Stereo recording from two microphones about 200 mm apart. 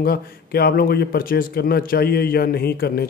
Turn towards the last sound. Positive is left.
turn(degrees=50)  # may be behind; listen again after turning